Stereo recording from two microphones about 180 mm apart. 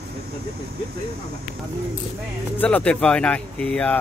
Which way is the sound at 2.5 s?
10° left (ahead or behind).